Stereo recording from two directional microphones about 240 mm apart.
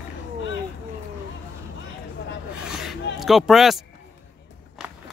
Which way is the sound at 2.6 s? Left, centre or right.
Centre.